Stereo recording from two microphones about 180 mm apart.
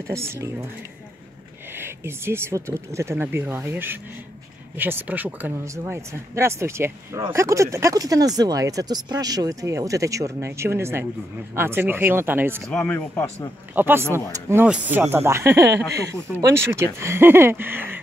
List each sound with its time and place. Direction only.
0.0 s speech: 15° right (ahead or behind)
1.7 s speech: 15° right (ahead or behind)
12.6 s speech: 5° left (ahead or behind)
13.7 s speech: 10° right (ahead or behind)